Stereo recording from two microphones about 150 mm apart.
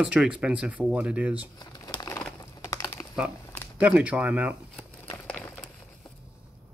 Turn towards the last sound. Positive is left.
turn(degrees=0)  # may be behind; listen again after turning